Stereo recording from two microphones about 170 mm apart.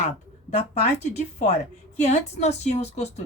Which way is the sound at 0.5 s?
40° left (ahead or behind).